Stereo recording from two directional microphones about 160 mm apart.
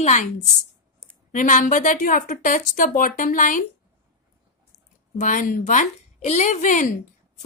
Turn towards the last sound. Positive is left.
turn(degrees=55)  # may be behind; listen again after turning